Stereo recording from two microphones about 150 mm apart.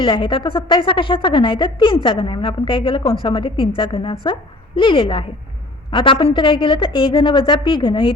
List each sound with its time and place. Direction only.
0.0 s a woman's voice: 35° left (ahead or behind)